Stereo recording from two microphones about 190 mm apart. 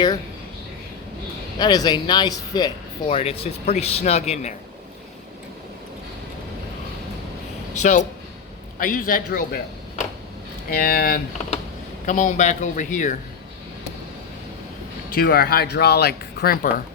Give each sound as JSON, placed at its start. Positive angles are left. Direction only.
{"t": 1.5, "sound": "speech", "side_deg": 20}
{"t": 3.1, "sound": "speech", "side_deg": 30}
{"t": 7.8, "sound": "speech", "side_deg": 40}
{"t": 15.1, "sound": "speech", "side_deg": 55}